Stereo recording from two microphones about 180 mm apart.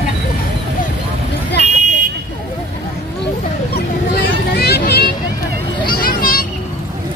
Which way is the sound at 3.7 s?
60° left (ahead or behind).